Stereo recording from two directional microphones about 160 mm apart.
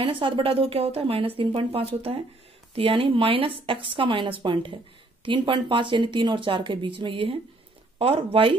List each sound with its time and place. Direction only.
0.0 s a woman's voice: 35° right (ahead or behind)